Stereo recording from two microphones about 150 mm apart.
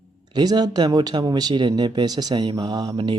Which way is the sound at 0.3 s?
30° right (ahead or behind).